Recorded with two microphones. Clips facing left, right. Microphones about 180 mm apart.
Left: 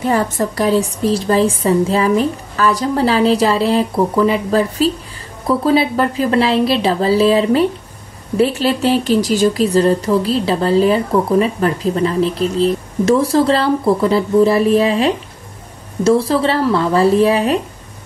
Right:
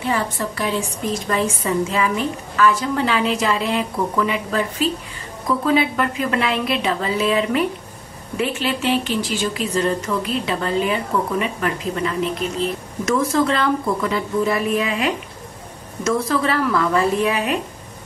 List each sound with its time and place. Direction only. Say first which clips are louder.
0.0 s speech: left 6 dB; 40° left (ahead or behind)